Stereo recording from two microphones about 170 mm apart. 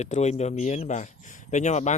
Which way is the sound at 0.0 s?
40° left (ahead or behind).